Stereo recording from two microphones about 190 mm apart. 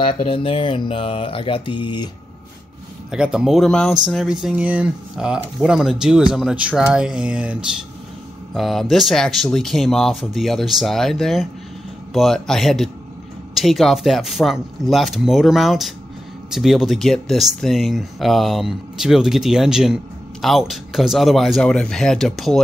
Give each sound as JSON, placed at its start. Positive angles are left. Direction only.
{"t": 0.0, "sound": "speech", "side_deg": 30}
{"t": 3.1, "sound": "speech", "side_deg": -5}
{"t": 8.5, "sound": "speech", "side_deg": 0}